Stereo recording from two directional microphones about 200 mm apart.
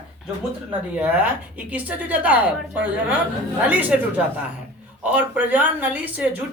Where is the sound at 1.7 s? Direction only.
10° right (ahead or behind).